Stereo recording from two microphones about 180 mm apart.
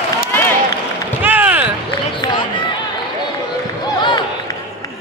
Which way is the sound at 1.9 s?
25° left (ahead or behind).